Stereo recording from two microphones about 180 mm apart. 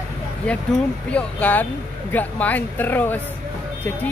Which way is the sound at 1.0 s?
10° left (ahead or behind).